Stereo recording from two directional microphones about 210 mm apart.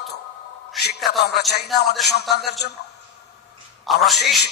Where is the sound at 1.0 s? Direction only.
Centre (ahead or behind).